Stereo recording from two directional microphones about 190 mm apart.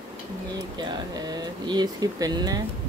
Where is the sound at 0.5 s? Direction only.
20° right (ahead or behind).